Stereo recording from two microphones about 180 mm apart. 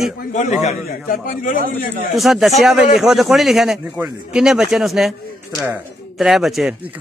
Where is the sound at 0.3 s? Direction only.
40° left (ahead or behind).